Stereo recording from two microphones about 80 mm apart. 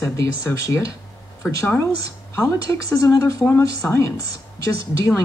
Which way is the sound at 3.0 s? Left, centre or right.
Left.